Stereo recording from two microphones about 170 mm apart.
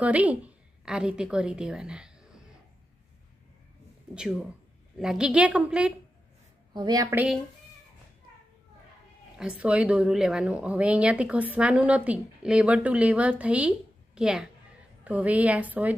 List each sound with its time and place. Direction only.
0.0 s a woman's voice: 10° right (ahead or behind)
4.1 s a woman's voice: 5° right (ahead or behind)
6.7 s a woman's voice: 25° right (ahead or behind)
9.4 s speech: 5° right (ahead or behind)